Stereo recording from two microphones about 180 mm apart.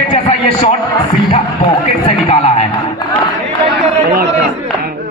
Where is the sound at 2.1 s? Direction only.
35° left (ahead or behind).